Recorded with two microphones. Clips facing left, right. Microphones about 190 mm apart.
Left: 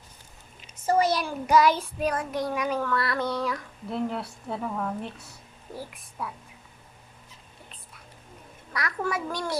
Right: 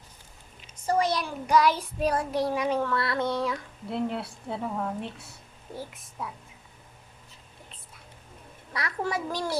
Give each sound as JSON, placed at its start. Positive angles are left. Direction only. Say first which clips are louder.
{"t": 0.9, "sound": "a sound", "louder": "left 2 dB", "side_deg": 5}
{"t": 2.0, "sound": "speech", "louder": "right 2 dB", "side_deg": -30}
{"t": 8.7, "sound": "speech", "louder": "left 1 dB", "side_deg": -30}